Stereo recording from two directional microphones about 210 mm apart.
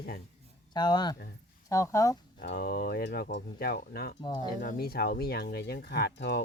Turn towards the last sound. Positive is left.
turn(degrees=55)  # may be behind; listen again after turning